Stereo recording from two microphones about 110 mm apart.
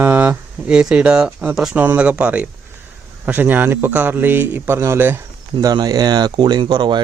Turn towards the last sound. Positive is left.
turn(degrees=-45)  # may be behind; listen again after turning